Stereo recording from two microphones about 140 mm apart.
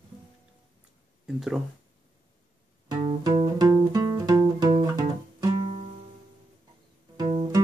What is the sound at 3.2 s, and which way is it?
Music, 35° right (ahead or behind).